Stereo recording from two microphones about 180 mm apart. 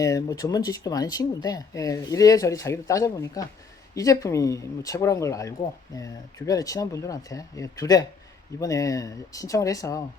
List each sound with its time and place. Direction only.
0.0 s speech: 20° left (ahead or behind)